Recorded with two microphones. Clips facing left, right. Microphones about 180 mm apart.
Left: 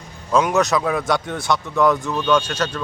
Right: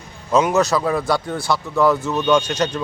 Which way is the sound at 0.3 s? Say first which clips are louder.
Right 1 dB; 5° right (ahead or behind).